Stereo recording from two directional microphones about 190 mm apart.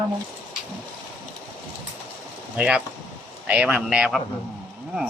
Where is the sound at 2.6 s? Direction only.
5° right (ahead or behind).